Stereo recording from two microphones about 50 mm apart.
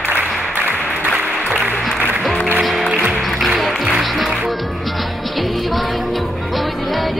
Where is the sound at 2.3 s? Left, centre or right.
Left.